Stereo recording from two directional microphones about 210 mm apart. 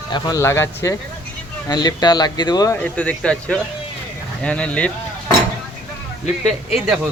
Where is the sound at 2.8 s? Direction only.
5° left (ahead or behind).